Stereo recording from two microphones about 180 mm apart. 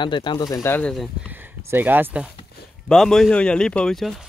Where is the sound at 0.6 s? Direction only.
10° left (ahead or behind).